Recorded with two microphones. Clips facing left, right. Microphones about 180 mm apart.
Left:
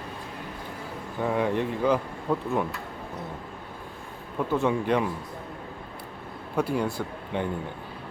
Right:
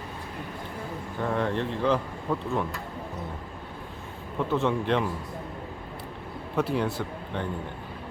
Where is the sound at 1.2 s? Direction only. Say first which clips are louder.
Left 2 dB; 10° left (ahead or behind).